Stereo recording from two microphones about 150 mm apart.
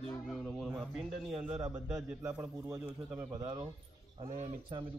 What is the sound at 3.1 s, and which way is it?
Speech, 25° right (ahead or behind).